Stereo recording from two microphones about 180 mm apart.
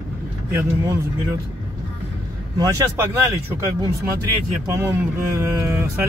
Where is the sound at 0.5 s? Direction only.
15° right (ahead or behind).